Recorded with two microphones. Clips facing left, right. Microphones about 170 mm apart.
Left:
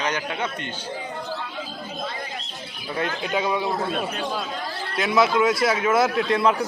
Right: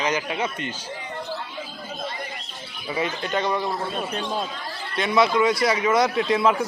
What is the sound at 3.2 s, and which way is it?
Speech, 5° left (ahead or behind).